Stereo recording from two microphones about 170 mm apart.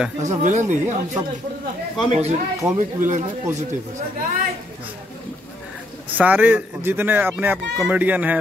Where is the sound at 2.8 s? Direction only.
50° right (ahead or behind).